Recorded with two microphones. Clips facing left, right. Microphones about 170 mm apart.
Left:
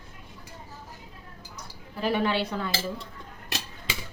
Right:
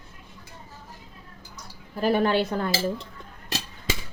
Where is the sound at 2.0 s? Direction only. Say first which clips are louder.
Right 4 dB; 45° right (ahead or behind).